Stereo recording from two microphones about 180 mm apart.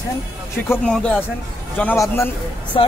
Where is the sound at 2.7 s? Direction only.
25° left (ahead or behind).